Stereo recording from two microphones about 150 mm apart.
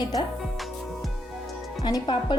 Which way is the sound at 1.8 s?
25° left (ahead or behind).